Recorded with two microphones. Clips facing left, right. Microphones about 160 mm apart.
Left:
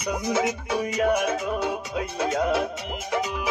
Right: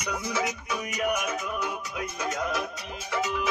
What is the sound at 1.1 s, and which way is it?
Music, 30° left (ahead or behind).